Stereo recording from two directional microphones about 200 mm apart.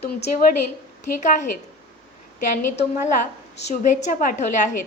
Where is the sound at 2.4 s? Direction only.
40° left (ahead or behind).